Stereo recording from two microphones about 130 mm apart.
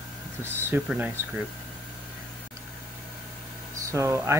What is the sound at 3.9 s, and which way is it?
Speech, 20° right (ahead or behind).